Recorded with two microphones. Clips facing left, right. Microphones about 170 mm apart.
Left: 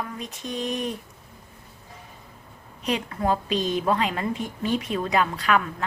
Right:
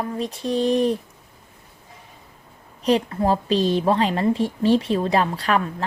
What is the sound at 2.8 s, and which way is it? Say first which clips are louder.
A woman's voice: right 7 dB; 35° right (ahead or behind).